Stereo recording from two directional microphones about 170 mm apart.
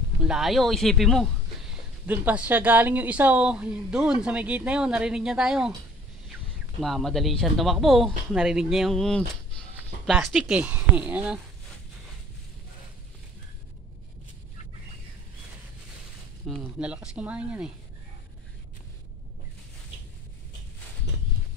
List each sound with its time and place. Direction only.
0.2 s speech: 5° right (ahead or behind)
2.0 s a woman's voice: 10° right (ahead or behind)
6.8 s speech: centre (ahead or behind)
16.4 s a woman's voice: 5° right (ahead or behind)